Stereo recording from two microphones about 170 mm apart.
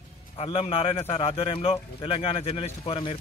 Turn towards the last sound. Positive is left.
turn(degrees=30)  # may be behind; listen again after turning